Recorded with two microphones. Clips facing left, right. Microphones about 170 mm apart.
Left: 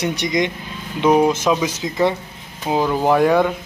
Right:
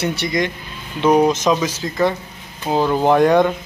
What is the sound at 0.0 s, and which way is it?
Speech, 15° left (ahead or behind).